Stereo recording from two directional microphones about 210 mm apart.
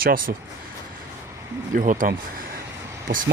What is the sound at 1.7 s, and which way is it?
Speech, 40° right (ahead or behind).